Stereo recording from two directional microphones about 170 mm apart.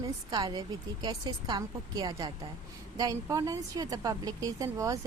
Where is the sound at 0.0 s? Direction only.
20° right (ahead or behind).